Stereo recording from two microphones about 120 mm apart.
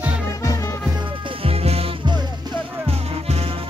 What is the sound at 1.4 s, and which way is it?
Music, 55° right (ahead or behind).